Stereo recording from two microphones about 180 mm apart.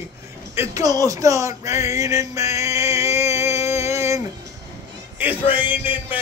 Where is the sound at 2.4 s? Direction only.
35° left (ahead or behind).